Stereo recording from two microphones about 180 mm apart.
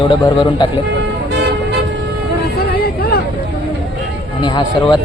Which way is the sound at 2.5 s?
60° left (ahead or behind).